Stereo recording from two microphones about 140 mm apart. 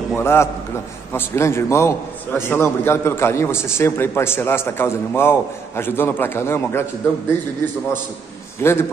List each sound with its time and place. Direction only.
0.1 s a man's voice: 15° left (ahead or behind)
8.5 s a man's voice: 15° left (ahead or behind)